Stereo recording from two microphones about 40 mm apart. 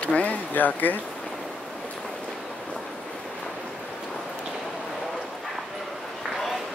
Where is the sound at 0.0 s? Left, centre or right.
Left.